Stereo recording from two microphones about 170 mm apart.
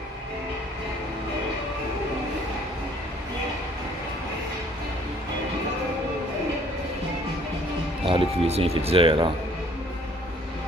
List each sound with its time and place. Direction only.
8.0 s speech: 35° right (ahead or behind)